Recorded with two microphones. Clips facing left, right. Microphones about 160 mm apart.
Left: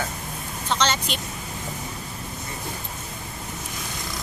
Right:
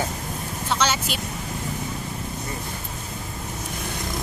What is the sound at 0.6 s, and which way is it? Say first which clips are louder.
Speech: even; 10° right (ahead or behind).